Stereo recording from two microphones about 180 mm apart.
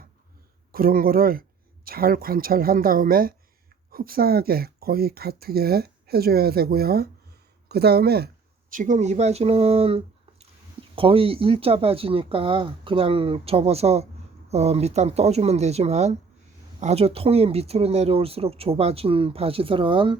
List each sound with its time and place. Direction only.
0.7 s speech: 55° right (ahead or behind)
8.7 s speech: 45° right (ahead or behind); by 20.1 s 30° right (ahead or behind)